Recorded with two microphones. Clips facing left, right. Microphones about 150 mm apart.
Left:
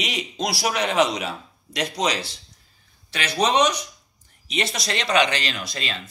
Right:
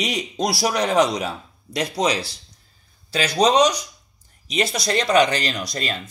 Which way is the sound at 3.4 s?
35° right (ahead or behind).